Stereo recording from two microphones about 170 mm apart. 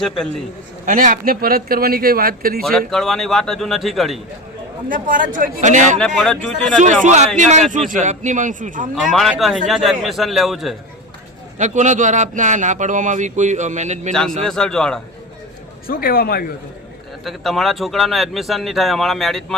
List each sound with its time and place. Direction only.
0.9 s speech: 50° right (ahead or behind)
2.6 s a man's voice: centre (ahead or behind)
4.9 s speech: 50° right (ahead or behind)
6.0 s a man's voice: 5° left (ahead or behind)
6.7 s speech: 45° right (ahead or behind)
9.1 s a man's voice: centre (ahead or behind)
11.5 s speech: 45° right (ahead or behind)
14.1 s a man's voice: 5° left (ahead or behind)
15.9 s a man's voice: 60° left (ahead or behind)
17.2 s a man's voice: centre (ahead or behind)